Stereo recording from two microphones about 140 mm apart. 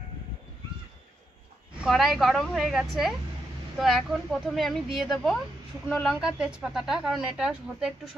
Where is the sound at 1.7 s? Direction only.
5° right (ahead or behind).